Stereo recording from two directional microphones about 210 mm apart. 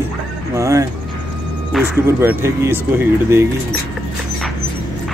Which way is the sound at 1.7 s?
Centre (ahead or behind).